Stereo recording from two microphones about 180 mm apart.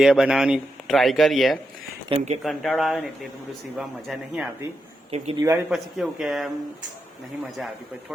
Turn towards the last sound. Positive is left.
turn(degrees=0)  # may be behind; listen again after turning